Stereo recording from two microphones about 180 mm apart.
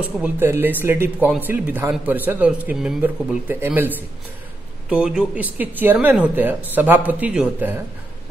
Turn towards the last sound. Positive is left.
turn(degrees=-10)  # may be behind; listen again after turning